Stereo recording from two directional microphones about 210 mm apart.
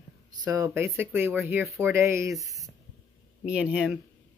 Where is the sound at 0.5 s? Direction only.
15° right (ahead or behind).